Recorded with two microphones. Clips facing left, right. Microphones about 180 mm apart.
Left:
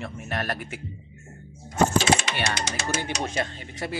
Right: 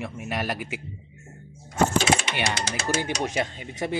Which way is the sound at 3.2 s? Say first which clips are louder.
Right 2 dB; 15° right (ahead or behind).